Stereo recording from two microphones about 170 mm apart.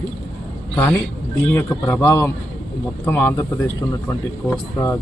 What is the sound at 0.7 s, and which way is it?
A man's voice, 5° left (ahead or behind).